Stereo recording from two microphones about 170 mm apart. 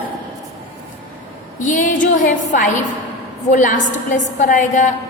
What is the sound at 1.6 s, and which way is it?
A woman's voice, 50° left (ahead or behind).